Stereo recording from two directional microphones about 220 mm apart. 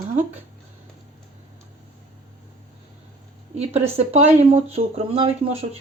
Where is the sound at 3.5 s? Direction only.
30° right (ahead or behind).